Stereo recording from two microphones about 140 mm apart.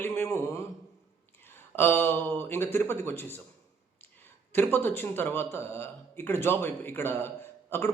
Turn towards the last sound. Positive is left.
turn(degrees=15)  # may be behind; listen again after turning